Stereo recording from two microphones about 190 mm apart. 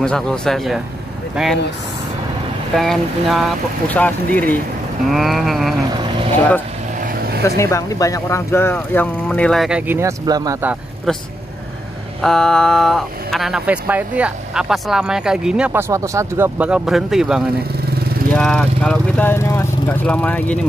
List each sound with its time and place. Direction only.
0.0 s speech: 5° left (ahead or behind)
2.7 s speech: centre (ahead or behind)
5.9 s speech: 25° right (ahead or behind)
7.0 s vehicle: 50° right (ahead or behind)
7.4 s speech: 15° left (ahead or behind); by 10.8 s 15° right (ahead or behind)
11.1 s speech: centre (ahead or behind)